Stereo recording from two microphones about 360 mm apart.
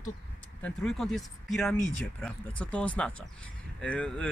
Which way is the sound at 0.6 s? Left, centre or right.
Centre.